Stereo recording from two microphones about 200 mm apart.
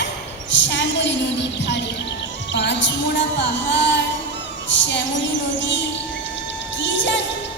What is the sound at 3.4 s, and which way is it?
Speech, 60° left (ahead or behind).